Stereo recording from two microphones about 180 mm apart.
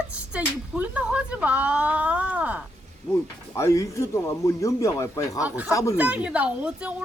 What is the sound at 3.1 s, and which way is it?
Speech, 15° left (ahead or behind).